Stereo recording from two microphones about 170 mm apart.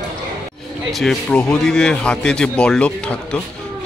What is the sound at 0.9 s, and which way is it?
Speech, centre (ahead or behind).